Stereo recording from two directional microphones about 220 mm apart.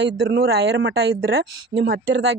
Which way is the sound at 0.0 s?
50° right (ahead or behind).